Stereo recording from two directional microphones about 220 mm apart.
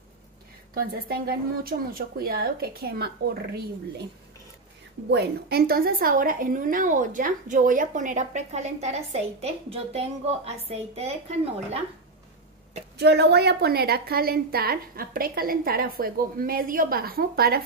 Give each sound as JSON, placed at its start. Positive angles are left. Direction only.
{"t": 0.7, "sound": "a woman's voice", "side_deg": -45}
{"t": 5.1, "sound": "a woman's voice", "side_deg": -45}
{"t": 12.9, "sound": "a woman's voice", "side_deg": -50}